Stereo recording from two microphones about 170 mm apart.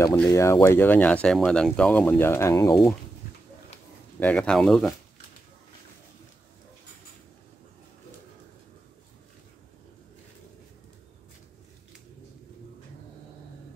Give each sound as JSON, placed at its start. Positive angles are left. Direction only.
{"t": 0.0, "sound": "speech", "side_deg": 15}
{"t": 4.2, "sound": "speech", "side_deg": 10}